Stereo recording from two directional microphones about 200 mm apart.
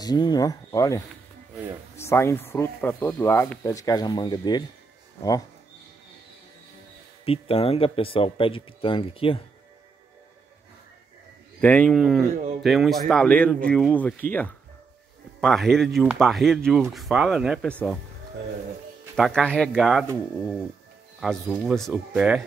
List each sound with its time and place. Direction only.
0.0 s speech: 20° left (ahead or behind)
7.2 s speech: 30° left (ahead or behind)
11.6 s speech: 5° left (ahead or behind)
19.1 s speech: centre (ahead or behind)
21.2 s speech: 5° right (ahead or behind)